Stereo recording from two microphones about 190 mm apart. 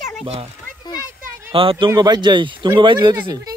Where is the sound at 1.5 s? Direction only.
30° right (ahead or behind).